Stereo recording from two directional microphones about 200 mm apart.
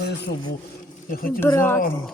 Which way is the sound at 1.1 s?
45° left (ahead or behind).